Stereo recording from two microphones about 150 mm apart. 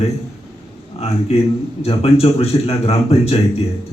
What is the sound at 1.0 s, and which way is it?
A man's voice, 45° left (ahead or behind).